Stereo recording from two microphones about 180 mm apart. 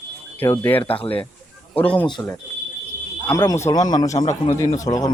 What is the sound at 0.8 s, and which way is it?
Speech, 30° left (ahead or behind).